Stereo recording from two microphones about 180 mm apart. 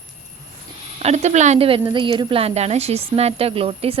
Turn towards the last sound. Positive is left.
turn(degrees=-30)  # may be behind; listen again after turning